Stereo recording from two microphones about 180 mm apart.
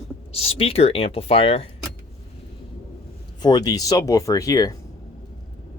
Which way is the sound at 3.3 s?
20° left (ahead or behind).